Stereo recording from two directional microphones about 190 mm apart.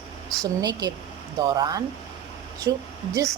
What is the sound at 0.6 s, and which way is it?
Speech, 20° right (ahead or behind).